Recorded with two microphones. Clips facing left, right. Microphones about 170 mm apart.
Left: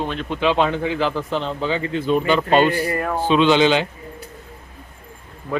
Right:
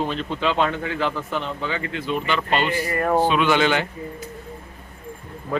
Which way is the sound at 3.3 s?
25° left (ahead or behind).